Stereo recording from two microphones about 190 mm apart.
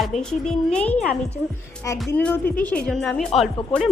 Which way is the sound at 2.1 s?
10° left (ahead or behind).